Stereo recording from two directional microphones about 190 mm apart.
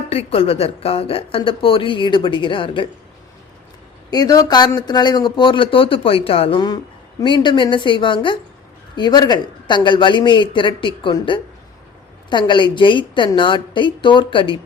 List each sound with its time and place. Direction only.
0.1 s a woman's voice: 30° left (ahead or behind)
4.1 s a woman's voice: 20° left (ahead or behind)